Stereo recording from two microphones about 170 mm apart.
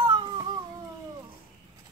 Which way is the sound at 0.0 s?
25° right (ahead or behind).